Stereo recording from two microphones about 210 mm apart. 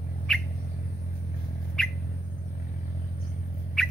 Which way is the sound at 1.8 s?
5° left (ahead or behind).